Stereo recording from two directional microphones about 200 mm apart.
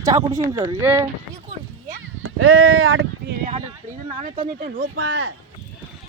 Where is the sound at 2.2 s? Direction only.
90° right.